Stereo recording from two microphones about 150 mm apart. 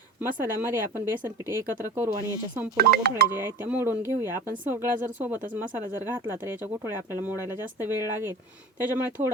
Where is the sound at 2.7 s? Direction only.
90° right.